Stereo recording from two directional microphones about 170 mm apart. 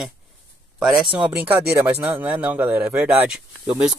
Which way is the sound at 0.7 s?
Centre (ahead or behind).